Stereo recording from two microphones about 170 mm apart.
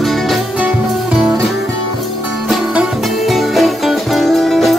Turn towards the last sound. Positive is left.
turn(degrees=0)  # may be behind; listen again after turning